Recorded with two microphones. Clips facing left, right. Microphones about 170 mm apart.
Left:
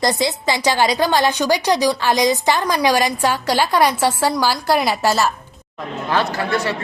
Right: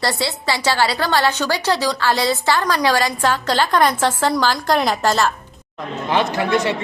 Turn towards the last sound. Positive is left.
turn(degrees=-20)  # may be behind; listen again after turning